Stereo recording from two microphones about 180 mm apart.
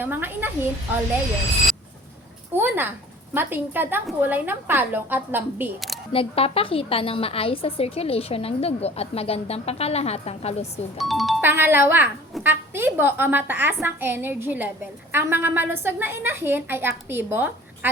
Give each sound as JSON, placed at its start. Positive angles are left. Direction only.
{"t": 0.0, "sound": "a woman's voice", "side_deg": -10}
{"t": 2.5, "sound": "a sound", "side_deg": -10}
{"t": 3.3, "sound": "a woman's voice", "side_deg": -10}
{"t": 6.1, "sound": "a woman's voice", "side_deg": 35}
{"t": 10.9, "sound": "music", "side_deg": 0}
{"t": 11.4, "sound": "a woman's voice", "side_deg": -10}